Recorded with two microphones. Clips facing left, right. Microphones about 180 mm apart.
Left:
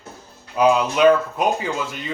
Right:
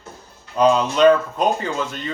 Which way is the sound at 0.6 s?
10° left (ahead or behind).